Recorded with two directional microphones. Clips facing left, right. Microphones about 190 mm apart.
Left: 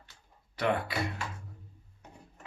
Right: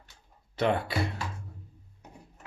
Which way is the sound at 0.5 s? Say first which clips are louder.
Right 3 dB; 25° right (ahead or behind).